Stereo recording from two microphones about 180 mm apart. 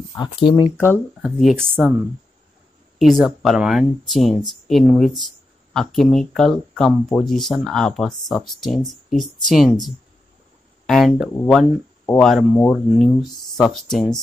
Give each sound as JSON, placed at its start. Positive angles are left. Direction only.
{"t": 0.2, "sound": "speech", "side_deg": 25}
{"t": 0.7, "sound": "speech", "side_deg": 10}
{"t": 1.2, "sound": "speech", "side_deg": 0}
{"t": 3.0, "sound": "speech", "side_deg": 0}